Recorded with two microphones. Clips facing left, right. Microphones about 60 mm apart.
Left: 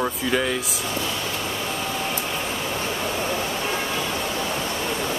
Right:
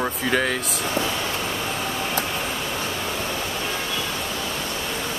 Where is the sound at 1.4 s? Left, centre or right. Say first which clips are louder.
Right 1 dB; centre.